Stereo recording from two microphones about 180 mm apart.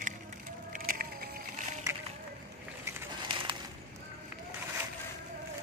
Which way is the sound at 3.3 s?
25° right (ahead or behind).